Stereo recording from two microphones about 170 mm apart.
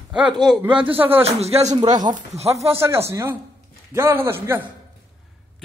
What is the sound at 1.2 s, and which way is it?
Speech, 35° right (ahead or behind).